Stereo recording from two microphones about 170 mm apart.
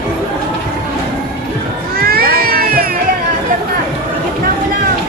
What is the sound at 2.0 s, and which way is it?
Cat, 60° right (ahead or behind).